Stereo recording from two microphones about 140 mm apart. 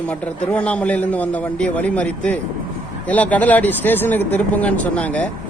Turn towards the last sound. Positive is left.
turn(degrees=10)  # may be behind; listen again after turning